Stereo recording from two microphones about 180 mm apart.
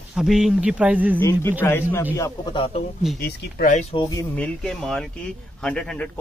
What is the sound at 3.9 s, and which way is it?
Speech, 20° left (ahead or behind).